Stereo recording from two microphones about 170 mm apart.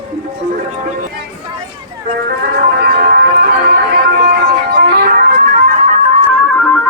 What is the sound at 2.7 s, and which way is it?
Music, 65° right (ahead or behind).